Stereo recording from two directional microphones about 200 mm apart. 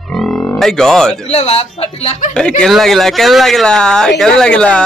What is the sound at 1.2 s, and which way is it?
A man's voice, 30° left (ahead or behind).